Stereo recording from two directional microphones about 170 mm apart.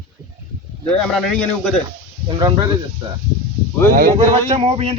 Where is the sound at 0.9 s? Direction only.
Centre (ahead or behind).